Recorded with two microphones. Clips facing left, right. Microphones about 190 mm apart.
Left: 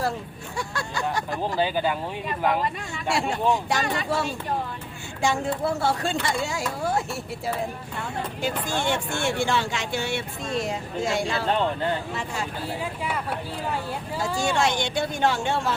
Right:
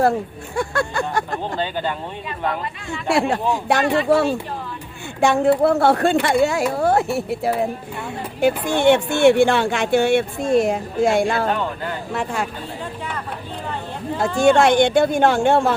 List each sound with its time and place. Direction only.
0.5 s speech: 55° right (ahead or behind)
1.5 s speech: 10° left (ahead or behind)
3.1 s speech: 60° right (ahead or behind)
14.3 s speech: 55° right (ahead or behind)